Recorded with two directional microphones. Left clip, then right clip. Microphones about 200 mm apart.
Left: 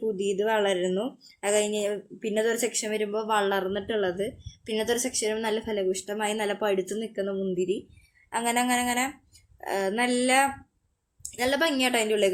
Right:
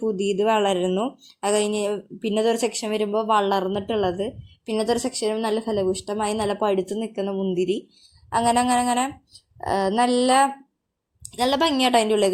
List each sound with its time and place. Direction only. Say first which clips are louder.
0.2 s speech: right 5 dB; 25° right (ahead or behind)